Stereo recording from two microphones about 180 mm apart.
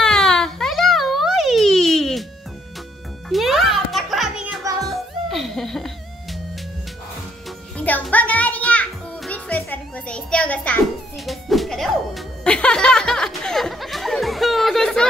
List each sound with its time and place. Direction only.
0.0 s baby cry: 5° left (ahead or behind)
3.3 s music: centre (ahead or behind)
4.6 s music: 20° right (ahead or behind)
5.3 s laughter: centre (ahead or behind)
7.7 s music: 5° left (ahead or behind)